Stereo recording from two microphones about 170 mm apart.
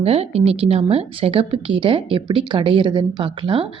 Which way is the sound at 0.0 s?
35° right (ahead or behind).